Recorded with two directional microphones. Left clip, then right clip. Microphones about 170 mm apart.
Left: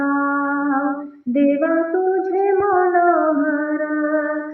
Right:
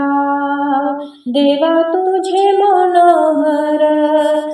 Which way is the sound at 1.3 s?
40° right (ahead or behind).